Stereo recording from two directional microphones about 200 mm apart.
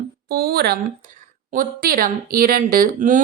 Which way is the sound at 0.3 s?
50° right (ahead or behind).